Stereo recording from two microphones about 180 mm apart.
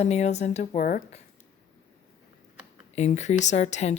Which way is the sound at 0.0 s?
40° left (ahead or behind).